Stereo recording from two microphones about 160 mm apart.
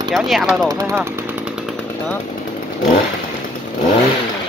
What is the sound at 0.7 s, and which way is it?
Speech, 20° right (ahead or behind).